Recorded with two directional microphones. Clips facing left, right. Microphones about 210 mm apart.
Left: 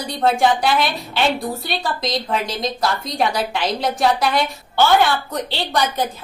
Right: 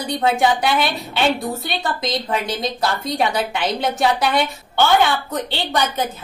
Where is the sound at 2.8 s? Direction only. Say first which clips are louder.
Even; centre (ahead or behind).